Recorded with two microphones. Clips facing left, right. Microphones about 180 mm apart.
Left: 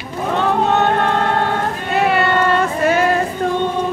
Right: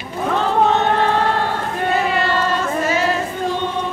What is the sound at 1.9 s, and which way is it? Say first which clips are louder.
Child singing: left 5 dB; 65° left (ahead or behind).